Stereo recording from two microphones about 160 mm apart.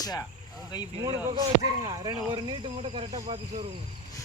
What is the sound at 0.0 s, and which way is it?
Speech, 25° left (ahead or behind).